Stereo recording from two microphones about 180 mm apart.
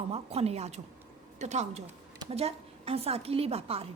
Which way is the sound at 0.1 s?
35° right (ahead or behind).